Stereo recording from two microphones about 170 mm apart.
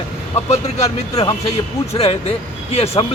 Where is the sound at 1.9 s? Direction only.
35° left (ahead or behind).